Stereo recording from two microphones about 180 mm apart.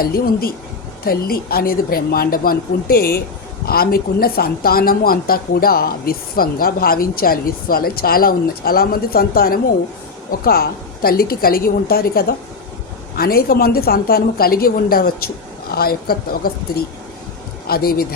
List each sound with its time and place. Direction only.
0.0 s speech: 55° left (ahead or behind)